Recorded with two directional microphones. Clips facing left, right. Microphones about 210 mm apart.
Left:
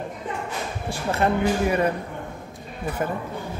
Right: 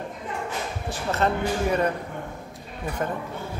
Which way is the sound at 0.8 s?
10° left (ahead or behind).